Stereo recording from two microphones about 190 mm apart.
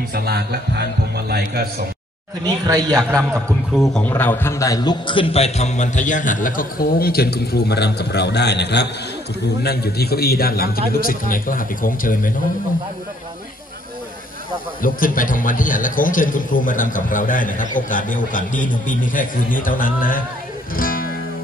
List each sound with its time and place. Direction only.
0.1 s a man's voice: 55° right (ahead or behind)
2.4 s speech: 20° right (ahead or behind)
3.1 s a man's voice: 5° left (ahead or behind); by 12.3 s 45° left (ahead or behind)
14.8 s a man's voice: 45° left (ahead or behind)
20.7 s music: 50° left (ahead or behind)